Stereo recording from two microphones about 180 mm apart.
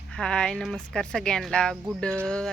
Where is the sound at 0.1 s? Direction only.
5° left (ahead or behind).